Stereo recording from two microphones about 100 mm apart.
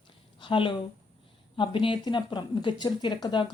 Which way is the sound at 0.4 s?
55° left (ahead or behind).